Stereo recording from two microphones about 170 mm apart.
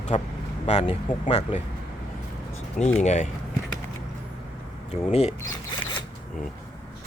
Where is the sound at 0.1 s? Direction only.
40° left (ahead or behind).